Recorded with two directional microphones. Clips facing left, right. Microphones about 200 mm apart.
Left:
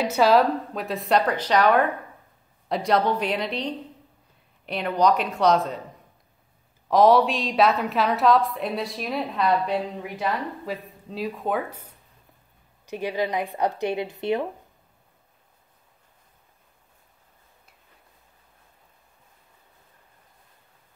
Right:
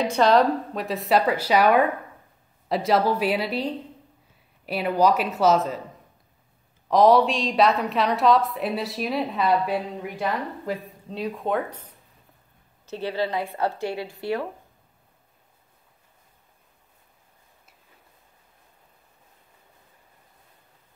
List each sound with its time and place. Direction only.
0.0 s a woman's voice: 5° left (ahead or behind)
6.9 s a woman's voice: centre (ahead or behind); by 14.5 s 20° left (ahead or behind)